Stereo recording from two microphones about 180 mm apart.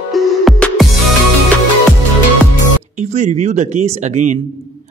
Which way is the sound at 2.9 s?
40° right (ahead or behind).